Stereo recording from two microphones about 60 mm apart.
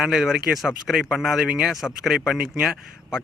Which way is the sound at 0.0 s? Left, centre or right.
Centre.